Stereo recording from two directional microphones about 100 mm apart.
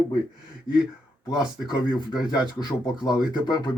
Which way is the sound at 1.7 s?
50° left (ahead or behind).